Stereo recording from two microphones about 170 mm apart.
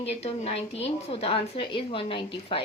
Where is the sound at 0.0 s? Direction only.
35° left (ahead or behind).